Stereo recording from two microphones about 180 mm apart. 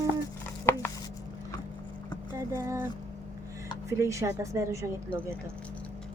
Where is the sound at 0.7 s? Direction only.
10° left (ahead or behind).